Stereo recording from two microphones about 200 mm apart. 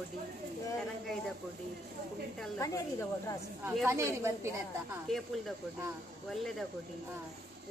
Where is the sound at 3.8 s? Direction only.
15° right (ahead or behind).